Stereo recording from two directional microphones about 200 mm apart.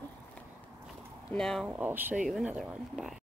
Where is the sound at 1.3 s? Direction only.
Centre (ahead or behind).